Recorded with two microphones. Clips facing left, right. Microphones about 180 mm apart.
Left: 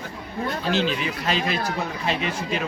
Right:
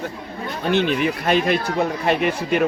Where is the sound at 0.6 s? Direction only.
60° right (ahead or behind).